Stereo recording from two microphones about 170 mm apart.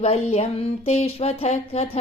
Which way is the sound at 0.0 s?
40° left (ahead or behind).